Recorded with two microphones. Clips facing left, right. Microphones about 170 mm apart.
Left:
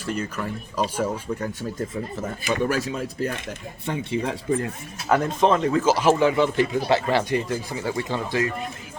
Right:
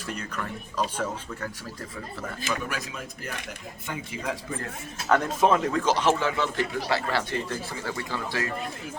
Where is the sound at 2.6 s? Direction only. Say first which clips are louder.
Left 10 dB; 35° left (ahead or behind).